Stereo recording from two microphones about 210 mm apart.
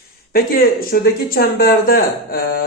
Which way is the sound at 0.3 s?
45° left (ahead or behind).